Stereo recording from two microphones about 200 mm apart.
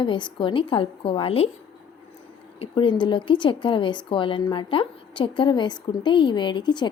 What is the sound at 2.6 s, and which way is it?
A woman's voice, 25° left (ahead or behind).